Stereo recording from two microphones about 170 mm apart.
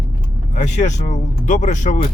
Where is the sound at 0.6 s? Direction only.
45° left (ahead or behind).